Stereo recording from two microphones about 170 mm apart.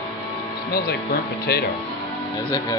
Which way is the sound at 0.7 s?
65° left (ahead or behind).